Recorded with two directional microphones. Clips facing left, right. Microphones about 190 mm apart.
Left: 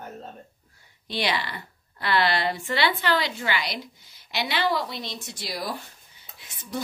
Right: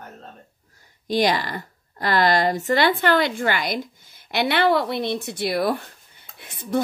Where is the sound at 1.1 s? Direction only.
45° right (ahead or behind).